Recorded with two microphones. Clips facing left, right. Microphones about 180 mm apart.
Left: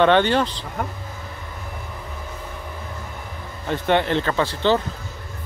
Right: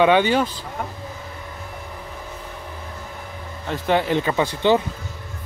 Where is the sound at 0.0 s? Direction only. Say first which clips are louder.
Even; 10° right (ahead or behind).